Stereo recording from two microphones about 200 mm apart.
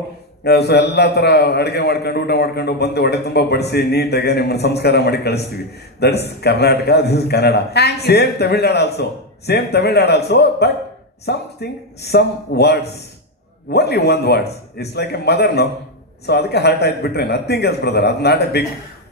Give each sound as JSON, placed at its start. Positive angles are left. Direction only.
{"t": 0.4, "sound": "a man's voice", "side_deg": 55}